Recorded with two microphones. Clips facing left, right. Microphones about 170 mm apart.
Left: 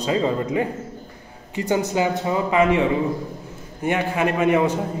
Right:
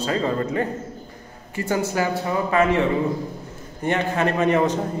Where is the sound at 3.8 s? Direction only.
10° left (ahead or behind).